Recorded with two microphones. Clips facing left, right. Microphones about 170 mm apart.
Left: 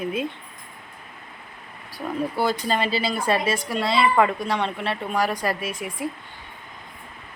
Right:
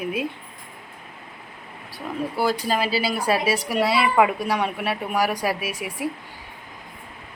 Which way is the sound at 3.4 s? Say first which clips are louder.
Right 2 dB; 90° right.